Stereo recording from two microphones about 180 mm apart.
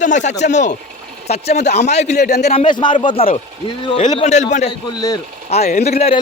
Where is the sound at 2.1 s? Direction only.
65° left (ahead or behind).